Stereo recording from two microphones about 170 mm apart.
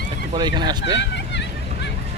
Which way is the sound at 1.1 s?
90° left.